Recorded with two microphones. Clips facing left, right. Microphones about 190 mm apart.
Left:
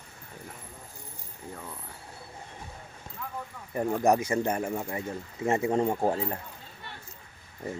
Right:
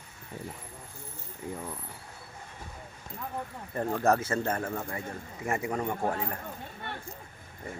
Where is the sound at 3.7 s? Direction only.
15° left (ahead or behind).